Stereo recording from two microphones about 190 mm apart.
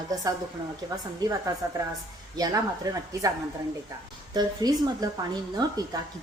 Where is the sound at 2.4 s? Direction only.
20° right (ahead or behind).